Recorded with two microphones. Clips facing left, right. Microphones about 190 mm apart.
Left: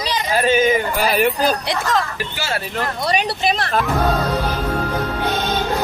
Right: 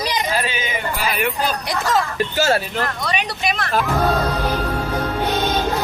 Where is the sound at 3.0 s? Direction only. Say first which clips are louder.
Left 4 dB; 30° left (ahead or behind).